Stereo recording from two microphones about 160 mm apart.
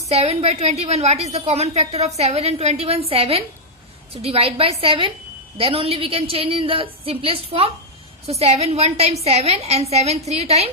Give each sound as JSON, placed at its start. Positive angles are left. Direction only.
{"t": 0.1, "sound": "a woman's voice", "side_deg": -40}